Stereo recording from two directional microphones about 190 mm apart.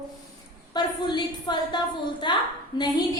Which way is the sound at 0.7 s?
25° left (ahead or behind).